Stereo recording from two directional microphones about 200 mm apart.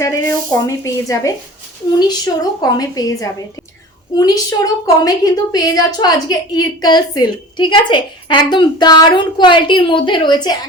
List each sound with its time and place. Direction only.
0.0 s a woman's voice: 15° left (ahead or behind)